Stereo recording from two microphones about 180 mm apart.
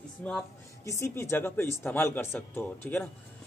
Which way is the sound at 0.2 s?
5° left (ahead or behind).